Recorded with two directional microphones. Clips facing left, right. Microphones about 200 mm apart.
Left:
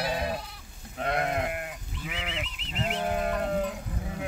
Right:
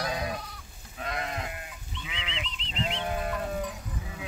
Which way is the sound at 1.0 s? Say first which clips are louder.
Left 6 dB; 55° left (ahead or behind).